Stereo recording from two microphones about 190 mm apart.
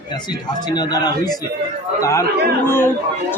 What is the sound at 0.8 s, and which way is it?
A man's voice, 20° left (ahead or behind).